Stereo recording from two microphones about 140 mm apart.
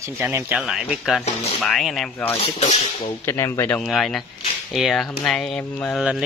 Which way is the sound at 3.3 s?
20° left (ahead or behind).